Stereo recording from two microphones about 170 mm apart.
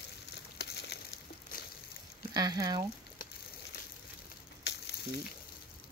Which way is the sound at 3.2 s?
55° left (ahead or behind).